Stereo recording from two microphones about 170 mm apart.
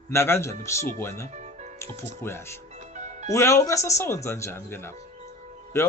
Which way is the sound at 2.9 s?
45° right (ahead or behind).